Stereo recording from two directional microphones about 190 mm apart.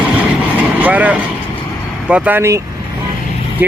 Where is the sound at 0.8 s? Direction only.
10° right (ahead or behind).